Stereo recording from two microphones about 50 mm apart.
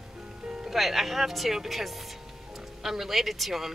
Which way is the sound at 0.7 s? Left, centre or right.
Centre.